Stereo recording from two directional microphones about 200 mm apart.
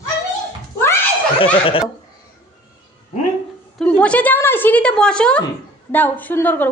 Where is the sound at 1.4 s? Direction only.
25° left (ahead or behind).